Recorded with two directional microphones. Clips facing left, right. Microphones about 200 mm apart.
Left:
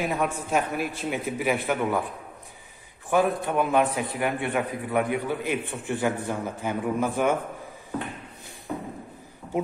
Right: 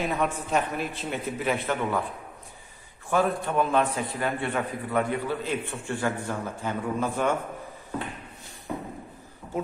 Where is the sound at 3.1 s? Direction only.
15° left (ahead or behind).